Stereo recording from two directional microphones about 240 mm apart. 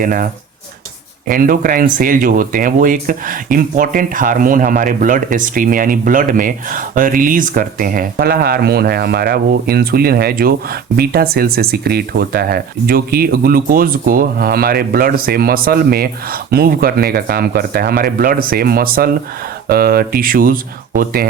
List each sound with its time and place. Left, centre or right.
0.0 s speech: right
1.3 s speech: right